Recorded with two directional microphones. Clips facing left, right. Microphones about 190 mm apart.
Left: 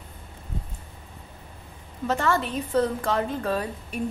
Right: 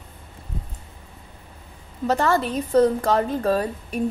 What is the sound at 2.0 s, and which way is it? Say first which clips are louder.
A woman's voice: right 4 dB; 35° right (ahead or behind).